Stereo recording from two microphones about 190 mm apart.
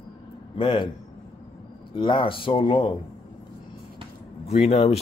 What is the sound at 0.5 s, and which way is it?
Speech, 25° left (ahead or behind).